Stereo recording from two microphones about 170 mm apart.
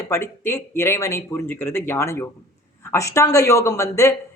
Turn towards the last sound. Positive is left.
turn(degrees=20)  # may be behind; listen again after turning